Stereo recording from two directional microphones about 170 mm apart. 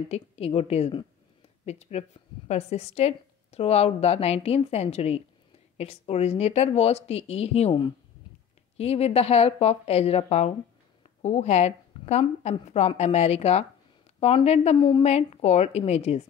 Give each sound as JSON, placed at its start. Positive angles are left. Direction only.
{"t": 0.1, "sound": "speech", "side_deg": 35}